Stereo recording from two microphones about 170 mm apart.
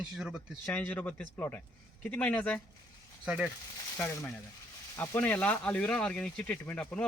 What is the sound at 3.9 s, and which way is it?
Speech, 15° left (ahead or behind).